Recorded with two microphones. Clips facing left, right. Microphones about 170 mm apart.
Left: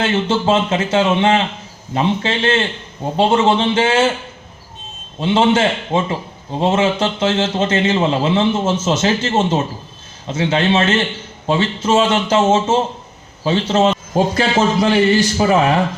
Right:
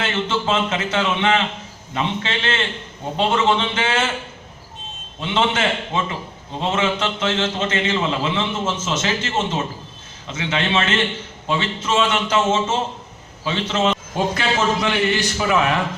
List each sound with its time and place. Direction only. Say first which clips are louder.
0.0 s a man's voice: left 6 dB; 30° left (ahead or behind)
5.2 s a man's voice: left 6 dB; 30° left (ahead or behind)